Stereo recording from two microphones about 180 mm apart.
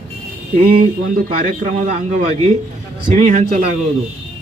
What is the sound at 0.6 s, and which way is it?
A man's voice, 50° right (ahead or behind).